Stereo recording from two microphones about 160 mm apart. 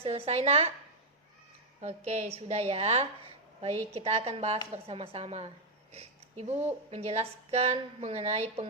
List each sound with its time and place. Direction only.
0.0 s speech: 40° right (ahead or behind)
1.8 s speech: 40° right (ahead or behind)